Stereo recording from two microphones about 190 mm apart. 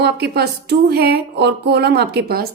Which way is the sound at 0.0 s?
60° right (ahead or behind).